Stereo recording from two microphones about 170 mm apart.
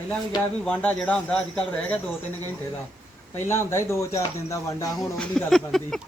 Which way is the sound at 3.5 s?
15° left (ahead or behind).